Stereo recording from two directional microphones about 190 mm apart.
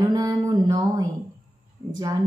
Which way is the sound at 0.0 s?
20° right (ahead or behind).